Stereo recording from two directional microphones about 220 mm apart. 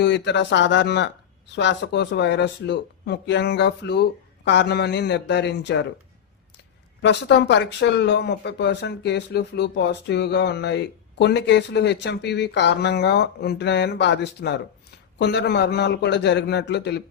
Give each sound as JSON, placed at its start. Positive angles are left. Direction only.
{"t": 0.0, "sound": "speech", "side_deg": 50}
{"t": 7.0, "sound": "speech", "side_deg": 50}